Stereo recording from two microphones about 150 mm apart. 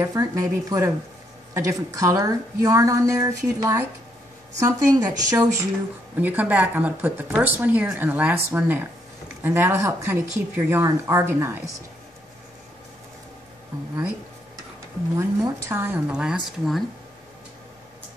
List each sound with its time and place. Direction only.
0.0 s a woman's voice: 25° right (ahead or behind)
6.1 s speech: 10° right (ahead or behind)
15.1 s speech: 20° right (ahead or behind); by 16.8 s centre (ahead or behind)